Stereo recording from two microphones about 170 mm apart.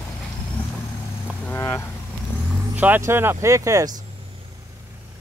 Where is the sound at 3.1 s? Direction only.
15° right (ahead or behind).